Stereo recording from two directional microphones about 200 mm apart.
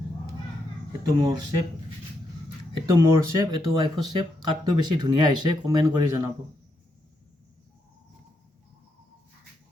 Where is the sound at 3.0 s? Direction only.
15° right (ahead or behind).